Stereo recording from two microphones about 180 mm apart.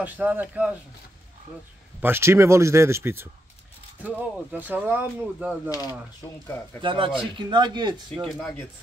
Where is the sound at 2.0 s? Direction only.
15° right (ahead or behind).